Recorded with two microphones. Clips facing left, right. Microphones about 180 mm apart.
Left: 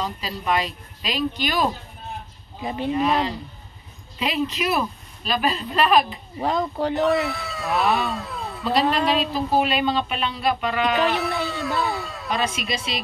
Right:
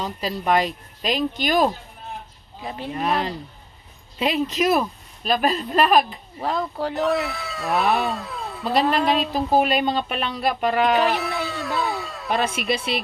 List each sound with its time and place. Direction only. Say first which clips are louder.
0.0 s speech: right 2 dB; 50° right (ahead or behind)
2.6 s a woman's voice: left 5 dB; centre (ahead or behind)
2.9 s speech: left 2 dB; 50° right (ahead or behind)
6.8 s a woman's voice: left 2 dB; centre (ahead or behind)
9.3 s speech: right 2 dB; 50° right (ahead or behind)
11.0 s music: even; centre (ahead or behind)
12.3 s speech: right 3 dB; 55° right (ahead or behind)